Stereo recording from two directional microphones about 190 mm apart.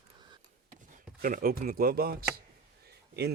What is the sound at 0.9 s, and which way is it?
Speech, 45° right (ahead or behind).